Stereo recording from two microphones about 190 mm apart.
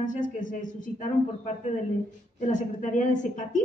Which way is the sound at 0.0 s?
45° left (ahead or behind).